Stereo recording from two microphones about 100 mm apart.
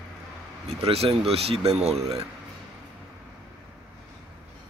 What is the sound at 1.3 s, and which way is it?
Speech, 90° right.